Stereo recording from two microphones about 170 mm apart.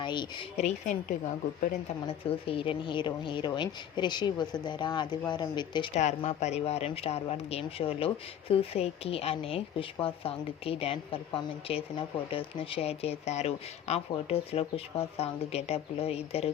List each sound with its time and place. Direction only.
0.0 s speech: 25° left (ahead or behind)
0.5 s speech: 40° left (ahead or behind)
2.0 s speech: 35° left (ahead or behind)
5.9 s speech: 45° left (ahead or behind)